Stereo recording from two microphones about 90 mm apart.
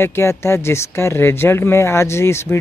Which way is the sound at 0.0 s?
30° left (ahead or behind).